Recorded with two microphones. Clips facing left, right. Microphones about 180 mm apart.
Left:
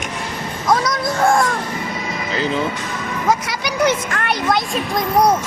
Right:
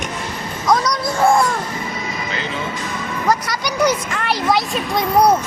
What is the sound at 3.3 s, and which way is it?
Speech, 5° left (ahead or behind).